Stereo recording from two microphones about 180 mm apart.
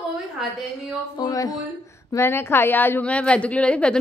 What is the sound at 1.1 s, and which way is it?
A woman's voice, 20° left (ahead or behind).